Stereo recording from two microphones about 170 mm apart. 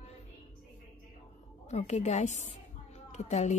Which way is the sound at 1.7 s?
40° left (ahead or behind).